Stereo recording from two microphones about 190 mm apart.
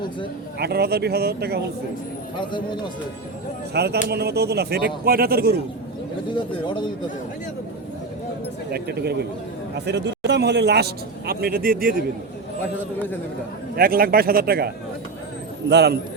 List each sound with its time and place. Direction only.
0.6 s a man's voice: 55° right (ahead or behind)
2.4 s speech: 25° left (ahead or behind)
3.8 s a man's voice: 60° right (ahead or behind)
6.3 s speech: 25° left (ahead or behind)
8.7 s a man's voice: 55° right (ahead or behind)
13.7 s a man's voice: 50° right (ahead or behind)
15.7 s a man's voice: 60° right (ahead or behind)